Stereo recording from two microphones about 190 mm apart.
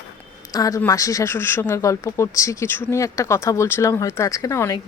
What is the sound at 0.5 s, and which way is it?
Speech, 20° left (ahead or behind).